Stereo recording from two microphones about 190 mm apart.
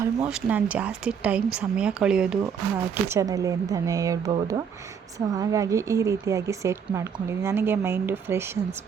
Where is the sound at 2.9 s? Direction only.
15° right (ahead or behind).